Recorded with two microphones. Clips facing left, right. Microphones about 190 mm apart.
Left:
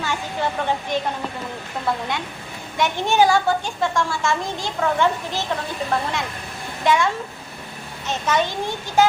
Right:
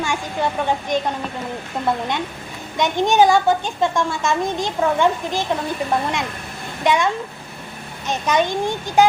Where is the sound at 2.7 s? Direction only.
15° right (ahead or behind).